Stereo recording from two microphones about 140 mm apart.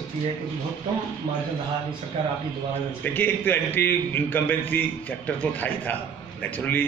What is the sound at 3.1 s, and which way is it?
A man's voice, 15° left (ahead or behind).